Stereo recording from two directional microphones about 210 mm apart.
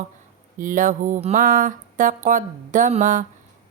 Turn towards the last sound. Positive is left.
turn(degrees=-35)  # may be behind; listen again after turning